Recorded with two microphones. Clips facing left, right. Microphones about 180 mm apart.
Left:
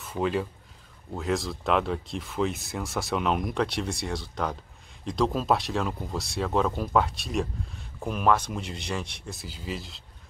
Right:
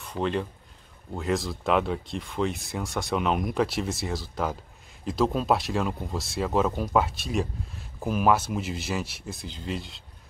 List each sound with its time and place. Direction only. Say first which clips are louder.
0.0 s speech: left 1 dB; 5° left (ahead or behind)